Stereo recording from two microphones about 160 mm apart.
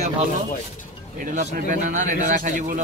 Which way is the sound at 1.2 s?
55° right (ahead or behind).